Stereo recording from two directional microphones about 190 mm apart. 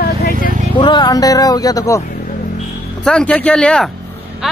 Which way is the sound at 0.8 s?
25° left (ahead or behind).